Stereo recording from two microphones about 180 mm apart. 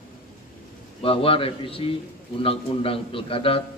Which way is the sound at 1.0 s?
30° left (ahead or behind).